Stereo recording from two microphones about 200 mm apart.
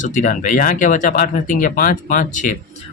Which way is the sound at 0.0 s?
40° left (ahead or behind).